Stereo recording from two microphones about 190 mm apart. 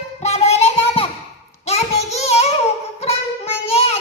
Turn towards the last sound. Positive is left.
turn(degrees=35)  # may be behind; listen again after turning